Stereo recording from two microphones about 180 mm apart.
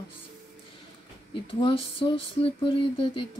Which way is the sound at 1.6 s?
30° left (ahead or behind).